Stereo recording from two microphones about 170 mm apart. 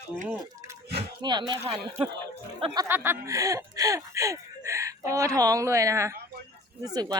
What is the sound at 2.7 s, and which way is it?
Speech, 15° right (ahead or behind).